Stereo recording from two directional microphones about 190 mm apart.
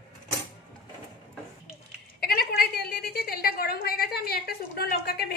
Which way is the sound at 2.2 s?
55° left (ahead or behind).